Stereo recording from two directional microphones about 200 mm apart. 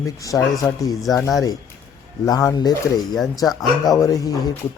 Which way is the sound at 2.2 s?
15° left (ahead or behind).